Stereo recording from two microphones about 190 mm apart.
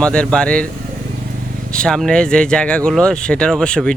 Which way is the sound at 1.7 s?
5° left (ahead or behind).